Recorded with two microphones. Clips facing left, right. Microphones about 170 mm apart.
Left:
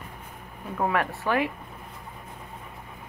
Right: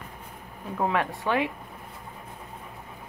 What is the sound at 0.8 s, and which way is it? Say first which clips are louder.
Speech: even; 20° right (ahead or behind).